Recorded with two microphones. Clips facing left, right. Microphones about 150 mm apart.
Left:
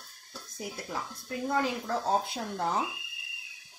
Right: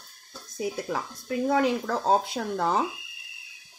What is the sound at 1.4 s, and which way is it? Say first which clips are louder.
A woman's voice: right 6 dB; 70° right (ahead or behind).